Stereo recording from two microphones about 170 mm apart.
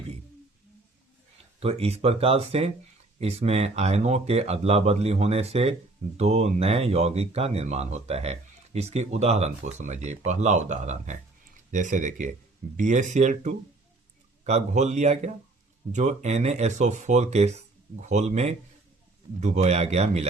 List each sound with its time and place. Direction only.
1.5 s speech: 35° right (ahead or behind)